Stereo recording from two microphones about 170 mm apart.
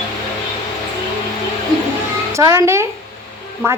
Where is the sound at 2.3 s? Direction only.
15° right (ahead or behind).